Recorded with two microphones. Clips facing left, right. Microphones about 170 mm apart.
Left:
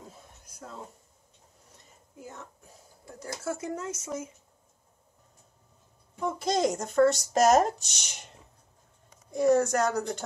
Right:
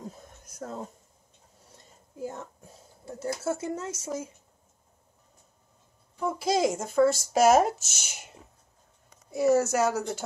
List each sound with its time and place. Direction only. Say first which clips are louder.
0.1 s a sound: right 3 dB; 40° right (ahead or behind)
3.1 s speech: right 4 dB; 25° right (ahead or behind)
6.1 s speech: right 2 dB; 5° right (ahead or behind)
9.3 s speech: even; 5° right (ahead or behind)